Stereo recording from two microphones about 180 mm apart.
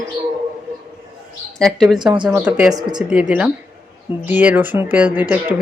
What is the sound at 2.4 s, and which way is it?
Speech, 5° right (ahead or behind).